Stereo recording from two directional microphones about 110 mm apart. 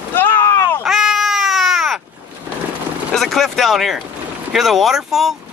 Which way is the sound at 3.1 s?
Centre (ahead or behind).